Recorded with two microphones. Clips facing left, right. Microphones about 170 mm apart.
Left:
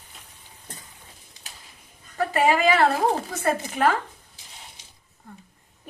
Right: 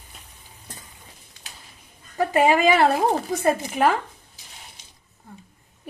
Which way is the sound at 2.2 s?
20° right (ahead or behind).